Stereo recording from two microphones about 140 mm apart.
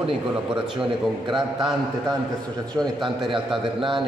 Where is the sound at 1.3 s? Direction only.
Centre (ahead or behind).